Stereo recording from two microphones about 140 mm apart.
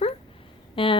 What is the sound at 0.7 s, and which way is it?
Speech, 40° left (ahead or behind).